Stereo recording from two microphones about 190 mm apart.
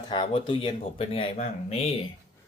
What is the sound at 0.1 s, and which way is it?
Speech, 25° left (ahead or behind).